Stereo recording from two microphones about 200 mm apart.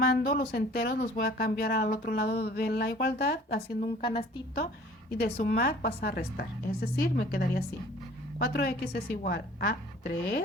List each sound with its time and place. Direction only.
0.0 s speech: 50° left (ahead or behind)
4.0 s a woman's voice: 25° left (ahead or behind)
5.1 s speech: 45° left (ahead or behind)